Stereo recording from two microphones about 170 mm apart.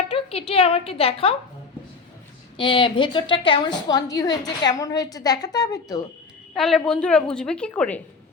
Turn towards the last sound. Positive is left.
turn(degrees=5)  # may be behind; listen again after turning